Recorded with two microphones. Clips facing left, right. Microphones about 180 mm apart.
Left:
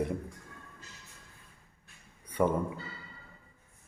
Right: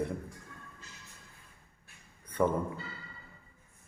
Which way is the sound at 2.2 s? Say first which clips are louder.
Left 1 dB; 10° left (ahead or behind).